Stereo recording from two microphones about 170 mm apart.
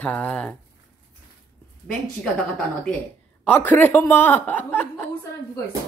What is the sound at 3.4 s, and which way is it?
Speech, 10° left (ahead or behind).